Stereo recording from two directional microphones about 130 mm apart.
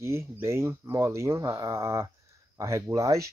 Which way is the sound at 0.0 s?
20° right (ahead or behind).